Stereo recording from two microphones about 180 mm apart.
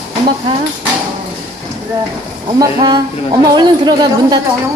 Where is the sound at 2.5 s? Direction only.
25° right (ahead or behind).